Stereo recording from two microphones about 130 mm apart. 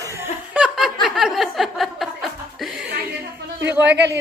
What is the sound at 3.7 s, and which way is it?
Speech, 15° right (ahead or behind).